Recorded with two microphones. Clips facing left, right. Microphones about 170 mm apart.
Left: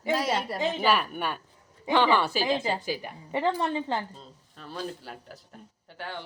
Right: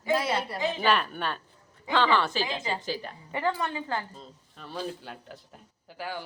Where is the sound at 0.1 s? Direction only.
40° left (ahead or behind).